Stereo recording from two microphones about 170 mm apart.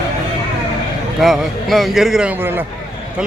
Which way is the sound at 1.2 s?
Centre (ahead or behind).